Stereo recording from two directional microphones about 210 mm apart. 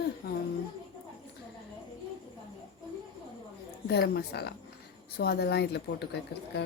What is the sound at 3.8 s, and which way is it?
Speech, 50° left (ahead or behind).